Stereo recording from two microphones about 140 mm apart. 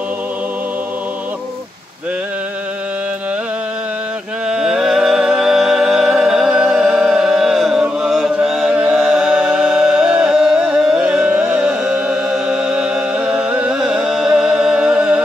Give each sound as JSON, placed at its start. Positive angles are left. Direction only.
{"t": 4.5, "sound": "music", "side_deg": -5}